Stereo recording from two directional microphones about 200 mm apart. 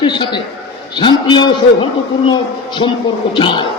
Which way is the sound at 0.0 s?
25° left (ahead or behind).